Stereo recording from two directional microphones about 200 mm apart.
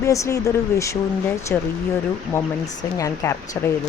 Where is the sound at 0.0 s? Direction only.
15° left (ahead or behind).